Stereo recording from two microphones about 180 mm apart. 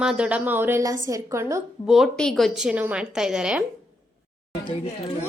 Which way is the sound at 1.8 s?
Centre (ahead or behind).